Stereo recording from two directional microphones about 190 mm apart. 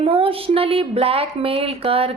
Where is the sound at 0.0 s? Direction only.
30° right (ahead or behind).